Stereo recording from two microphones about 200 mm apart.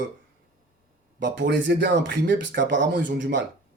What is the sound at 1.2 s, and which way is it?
Speech, 60° right (ahead or behind).